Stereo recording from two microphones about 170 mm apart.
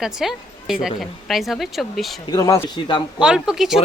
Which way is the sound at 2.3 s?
20° left (ahead or behind).